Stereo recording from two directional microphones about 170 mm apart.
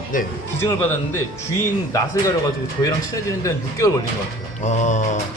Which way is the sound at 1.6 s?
20° left (ahead or behind).